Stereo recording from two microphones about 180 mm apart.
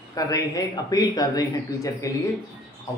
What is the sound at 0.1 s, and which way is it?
Speech, 20° left (ahead or behind).